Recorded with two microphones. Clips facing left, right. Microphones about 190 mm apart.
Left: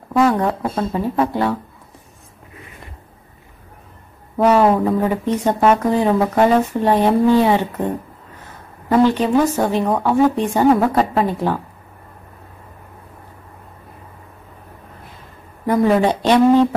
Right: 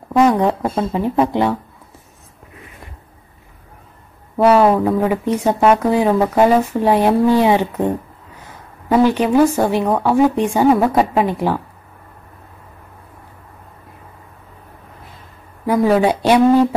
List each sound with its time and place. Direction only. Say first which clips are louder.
0.1 s speech: right 2 dB; 15° right (ahead or behind)
4.4 s speech: right 2 dB; 10° right (ahead or behind)
15.6 s speech: right 1 dB; 5° right (ahead or behind)